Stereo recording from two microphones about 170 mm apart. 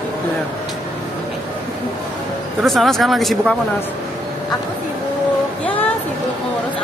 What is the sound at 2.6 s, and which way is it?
Speech, centre (ahead or behind).